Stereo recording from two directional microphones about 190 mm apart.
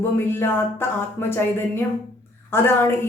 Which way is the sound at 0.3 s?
10° left (ahead or behind).